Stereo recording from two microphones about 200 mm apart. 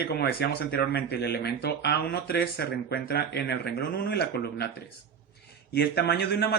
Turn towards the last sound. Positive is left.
turn(degrees=55)  # may be behind; listen again after turning